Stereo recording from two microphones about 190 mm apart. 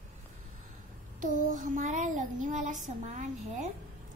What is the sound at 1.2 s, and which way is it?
Child singing, 45° right (ahead or behind).